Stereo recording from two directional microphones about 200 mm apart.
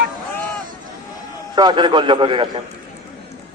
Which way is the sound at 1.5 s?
20° right (ahead or behind).